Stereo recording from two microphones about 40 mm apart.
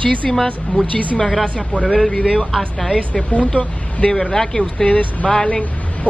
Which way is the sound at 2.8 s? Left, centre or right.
Left.